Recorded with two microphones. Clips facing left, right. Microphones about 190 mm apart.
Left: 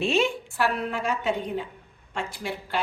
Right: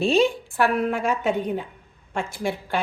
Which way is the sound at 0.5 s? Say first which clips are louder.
Right 5 dB; 50° right (ahead or behind).